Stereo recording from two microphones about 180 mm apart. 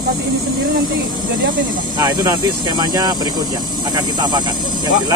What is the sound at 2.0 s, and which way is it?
Speech, 20° right (ahead or behind).